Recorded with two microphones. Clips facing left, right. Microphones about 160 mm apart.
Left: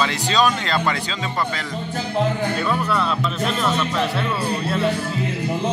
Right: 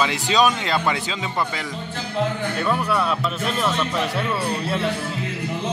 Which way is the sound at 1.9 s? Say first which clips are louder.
Left 3 dB; 45° left (ahead or behind).